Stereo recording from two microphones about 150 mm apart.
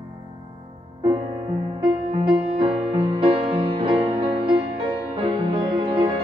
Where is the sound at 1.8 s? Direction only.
35° right (ahead or behind).